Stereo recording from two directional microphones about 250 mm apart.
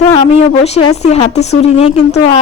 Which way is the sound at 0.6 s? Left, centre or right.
Left.